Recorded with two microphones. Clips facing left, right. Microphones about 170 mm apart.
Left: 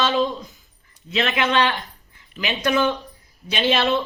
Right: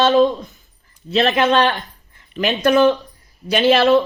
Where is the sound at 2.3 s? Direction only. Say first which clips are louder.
Right 7 dB; 60° right (ahead or behind).